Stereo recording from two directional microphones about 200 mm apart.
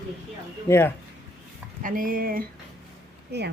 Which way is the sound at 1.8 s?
45° right (ahead or behind).